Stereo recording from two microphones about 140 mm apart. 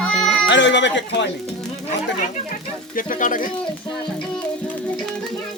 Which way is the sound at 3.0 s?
70° left (ahead or behind).